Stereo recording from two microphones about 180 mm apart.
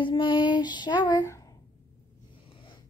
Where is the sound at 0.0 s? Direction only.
25° left (ahead or behind).